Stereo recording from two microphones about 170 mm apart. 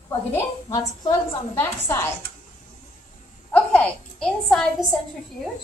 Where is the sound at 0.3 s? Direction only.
20° left (ahead or behind).